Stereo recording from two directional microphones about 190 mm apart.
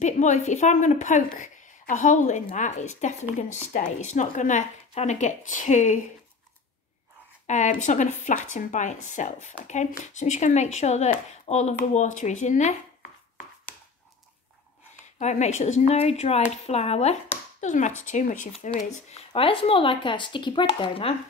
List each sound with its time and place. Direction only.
0.0 s a woman's voice: 40° left (ahead or behind)
7.4 s a woman's voice: 40° left (ahead or behind)
15.1 s a woman's voice: 35° left (ahead or behind)
19.3 s speech: 30° left (ahead or behind)